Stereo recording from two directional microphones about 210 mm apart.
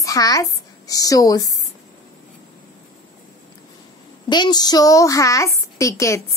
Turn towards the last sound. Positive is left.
turn(degrees=15)  # may be behind; listen again after turning